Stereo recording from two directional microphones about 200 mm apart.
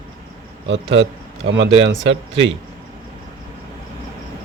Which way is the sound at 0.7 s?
65° right (ahead or behind).